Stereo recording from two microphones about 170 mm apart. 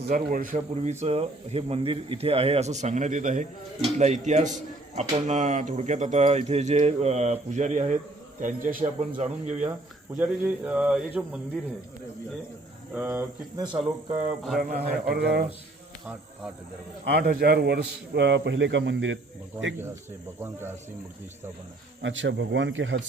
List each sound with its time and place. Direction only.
0.1 s speech: 55° right (ahead or behind)
10.2 s speech: 10° right (ahead or behind)
12.9 s speech: 10° right (ahead or behind)
14.1 s speech: 40° right (ahead or behind)
14.6 s speech: 55° right (ahead or behind)
15.0 s speech: 65° right (ahead or behind)
17.1 s a man's voice: 65° right (ahead or behind); by 19.2 s 90° right
20.4 s speech: 15° right (ahead or behind)
22.0 s a man's voice: 90° right